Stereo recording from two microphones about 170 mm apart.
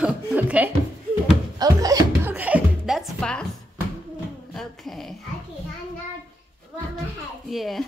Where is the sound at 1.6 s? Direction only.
20° right (ahead or behind).